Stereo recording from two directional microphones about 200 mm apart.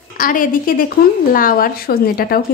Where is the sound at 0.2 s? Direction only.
45° left (ahead or behind).